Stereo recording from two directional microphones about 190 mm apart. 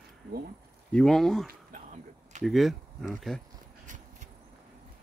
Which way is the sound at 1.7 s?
40° right (ahead or behind).